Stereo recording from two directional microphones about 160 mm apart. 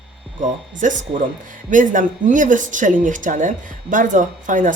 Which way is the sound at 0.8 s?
50° right (ahead or behind).